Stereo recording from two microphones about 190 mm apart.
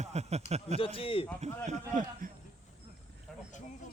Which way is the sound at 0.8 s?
30° left (ahead or behind).